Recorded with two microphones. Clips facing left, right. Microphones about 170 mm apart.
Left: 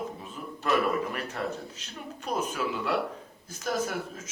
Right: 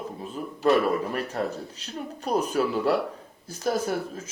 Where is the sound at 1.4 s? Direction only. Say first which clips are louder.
Right 4 dB; 40° right (ahead or behind).